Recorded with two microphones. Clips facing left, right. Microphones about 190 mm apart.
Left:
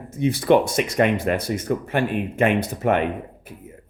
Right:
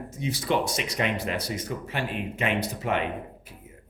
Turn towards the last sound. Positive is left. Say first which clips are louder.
# left 7 dB
turn(degrees=50)  # may be behind; listen again after turning